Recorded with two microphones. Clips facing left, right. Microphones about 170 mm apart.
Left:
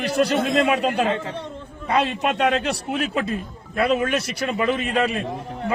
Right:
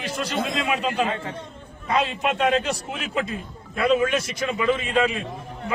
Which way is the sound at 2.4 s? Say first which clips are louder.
Right 1 dB; 65° left (ahead or behind).